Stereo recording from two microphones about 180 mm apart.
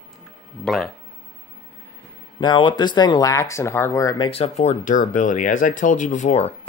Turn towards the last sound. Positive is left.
turn(degrees=40)  # may be behind; listen again after turning